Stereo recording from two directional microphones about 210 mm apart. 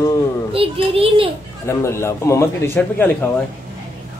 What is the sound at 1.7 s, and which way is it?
A man's voice, 15° left (ahead or behind).